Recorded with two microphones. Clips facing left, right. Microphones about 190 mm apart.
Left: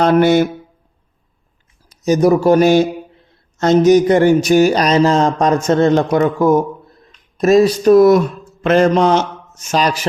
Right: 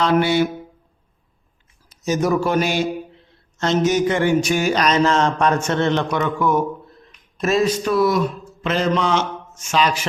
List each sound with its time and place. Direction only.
0.0 s speech: 45° left (ahead or behind)
2.0 s speech: 35° left (ahead or behind)